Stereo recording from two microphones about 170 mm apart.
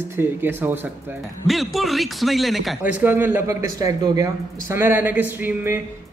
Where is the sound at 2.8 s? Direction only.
10° right (ahead or behind).